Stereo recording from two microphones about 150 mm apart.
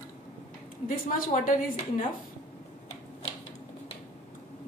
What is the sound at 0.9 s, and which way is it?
Speech, 65° left (ahead or behind).